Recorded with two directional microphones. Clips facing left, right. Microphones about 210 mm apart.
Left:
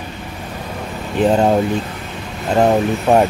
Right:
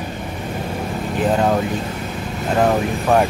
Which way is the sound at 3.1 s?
25° left (ahead or behind).